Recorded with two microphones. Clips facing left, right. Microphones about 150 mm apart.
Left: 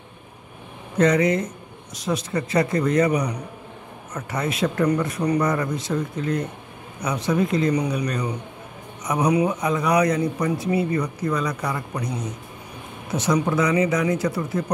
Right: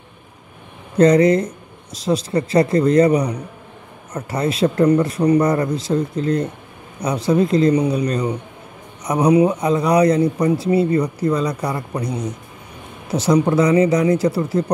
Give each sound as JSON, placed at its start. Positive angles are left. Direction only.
{"t": 0.9, "sound": "a man's voice", "side_deg": -35}
{"t": 13.1, "sound": "a man's voice", "side_deg": -35}